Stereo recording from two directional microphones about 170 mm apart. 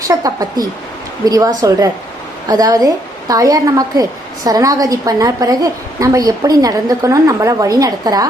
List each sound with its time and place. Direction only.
0.1 s a woman's voice: 20° right (ahead or behind)